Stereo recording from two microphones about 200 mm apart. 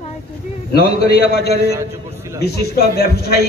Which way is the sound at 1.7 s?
15° right (ahead or behind).